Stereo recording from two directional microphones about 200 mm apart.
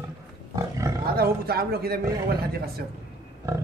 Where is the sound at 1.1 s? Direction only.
50° right (ahead or behind).